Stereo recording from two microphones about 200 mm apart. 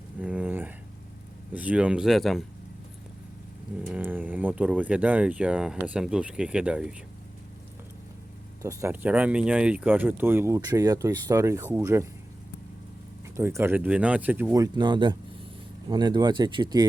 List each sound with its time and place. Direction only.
0.2 s a sound: 5° right (ahead or behind)
1.5 s speech: 5° right (ahead or behind)
3.8 s speech: 10° right (ahead or behind)
8.6 s speech: 10° right (ahead or behind)
13.3 s speech: 10° right (ahead or behind)